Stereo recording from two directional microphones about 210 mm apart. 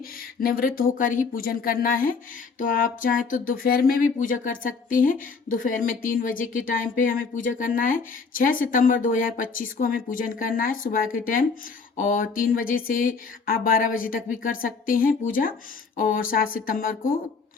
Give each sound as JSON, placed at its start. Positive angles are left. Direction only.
{"t": 0.3, "sound": "speech", "side_deg": 45}